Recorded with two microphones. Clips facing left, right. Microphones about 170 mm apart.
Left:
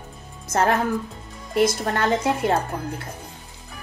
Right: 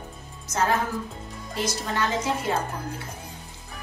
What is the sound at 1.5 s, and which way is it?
A woman's voice, 55° left (ahead or behind).